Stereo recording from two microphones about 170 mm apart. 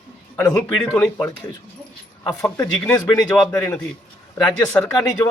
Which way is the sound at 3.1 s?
20° left (ahead or behind).